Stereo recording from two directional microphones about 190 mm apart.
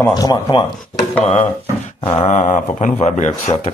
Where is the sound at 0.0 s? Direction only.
20° left (ahead or behind).